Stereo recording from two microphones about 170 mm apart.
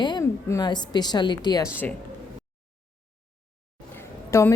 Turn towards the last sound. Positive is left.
turn(degrees=15)  # may be behind; listen again after turning